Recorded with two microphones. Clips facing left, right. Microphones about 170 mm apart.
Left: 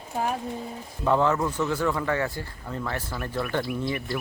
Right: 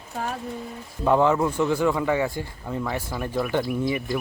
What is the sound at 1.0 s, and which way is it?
Speech, 15° right (ahead or behind).